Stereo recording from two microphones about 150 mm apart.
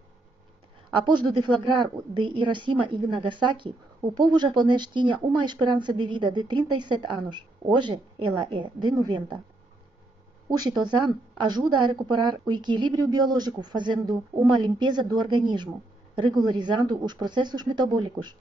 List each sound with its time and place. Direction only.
0.9 s a woman's voice: 30° right (ahead or behind)
10.5 s a woman's voice: 25° right (ahead or behind)